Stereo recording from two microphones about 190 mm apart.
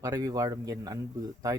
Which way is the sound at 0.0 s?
20° right (ahead or behind).